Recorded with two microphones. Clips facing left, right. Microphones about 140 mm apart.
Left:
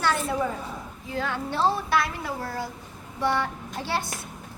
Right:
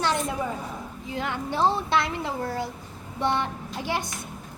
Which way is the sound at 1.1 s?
20° right (ahead or behind).